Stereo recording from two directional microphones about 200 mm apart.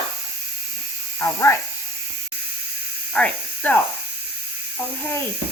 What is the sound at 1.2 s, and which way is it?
Speech, 15° left (ahead or behind).